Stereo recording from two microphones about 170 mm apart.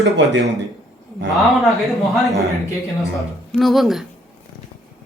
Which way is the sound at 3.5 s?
Centre (ahead or behind).